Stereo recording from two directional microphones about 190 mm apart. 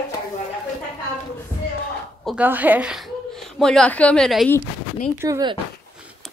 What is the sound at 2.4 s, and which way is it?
A woman's voice, 10° right (ahead or behind).